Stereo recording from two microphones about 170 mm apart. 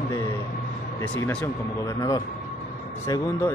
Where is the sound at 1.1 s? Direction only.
15° left (ahead or behind).